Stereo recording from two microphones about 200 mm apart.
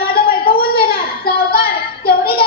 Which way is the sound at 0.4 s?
50° left (ahead or behind).